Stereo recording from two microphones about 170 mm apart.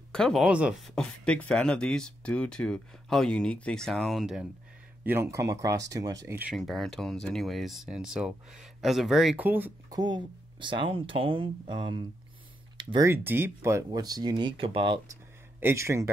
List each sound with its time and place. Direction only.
0.1 s speech: 5° left (ahead or behind)
5.0 s speech: 15° right (ahead or behind)
6.5 s speech: centre (ahead or behind)
9.8 s speech: 25° right (ahead or behind)
13.0 s speech: 15° right (ahead or behind); by 15.0 s 30° right (ahead or behind)
15.6 s speech: 15° right (ahead or behind)